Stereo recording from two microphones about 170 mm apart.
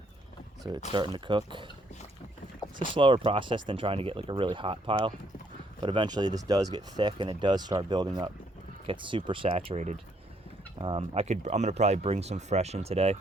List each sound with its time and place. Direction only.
0.9 s speech: 30° right (ahead or behind)
2.9 s speech: 30° right (ahead or behind)
10.8 s speech: 30° right (ahead or behind)